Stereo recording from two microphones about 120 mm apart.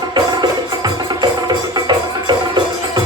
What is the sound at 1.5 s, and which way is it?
Music, 40° right (ahead or behind).